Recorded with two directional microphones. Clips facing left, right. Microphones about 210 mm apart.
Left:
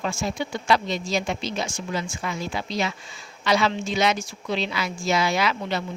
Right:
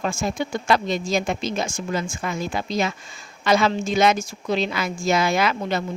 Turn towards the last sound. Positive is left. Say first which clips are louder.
# right 3 dB
turn(degrees=-50)  # may be behind; listen again after turning